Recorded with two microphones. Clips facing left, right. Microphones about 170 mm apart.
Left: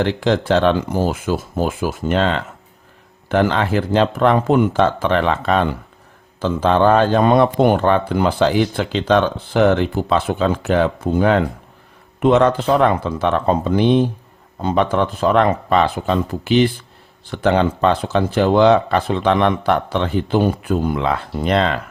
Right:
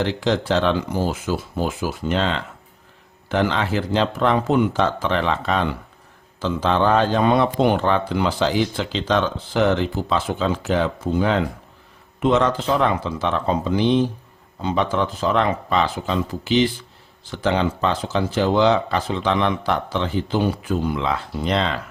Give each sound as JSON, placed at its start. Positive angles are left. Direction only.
{"t": 0.0, "sound": "a man's voice", "side_deg": 55}